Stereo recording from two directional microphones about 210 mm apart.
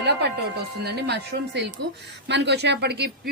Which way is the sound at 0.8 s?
50° right (ahead or behind).